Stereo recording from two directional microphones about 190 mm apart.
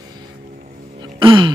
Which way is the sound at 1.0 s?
25° right (ahead or behind).